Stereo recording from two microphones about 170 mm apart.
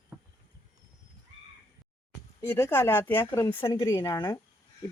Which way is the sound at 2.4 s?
15° left (ahead or behind).